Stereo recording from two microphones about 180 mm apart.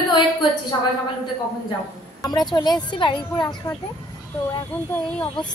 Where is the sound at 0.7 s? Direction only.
25° left (ahead or behind).